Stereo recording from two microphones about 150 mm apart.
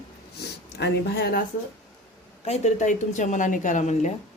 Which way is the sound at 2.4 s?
50° left (ahead or behind).